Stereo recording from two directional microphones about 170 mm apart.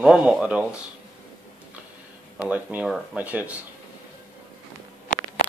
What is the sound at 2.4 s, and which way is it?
Speech, 10° right (ahead or behind).